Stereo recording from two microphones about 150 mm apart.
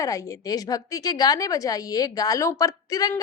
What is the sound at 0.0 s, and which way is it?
A woman's voice, 20° left (ahead or behind).